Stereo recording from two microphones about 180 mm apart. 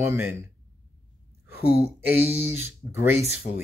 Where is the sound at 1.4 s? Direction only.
10° right (ahead or behind).